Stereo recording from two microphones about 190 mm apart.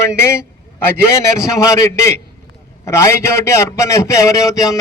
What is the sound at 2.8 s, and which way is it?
A man's voice, 15° left (ahead or behind).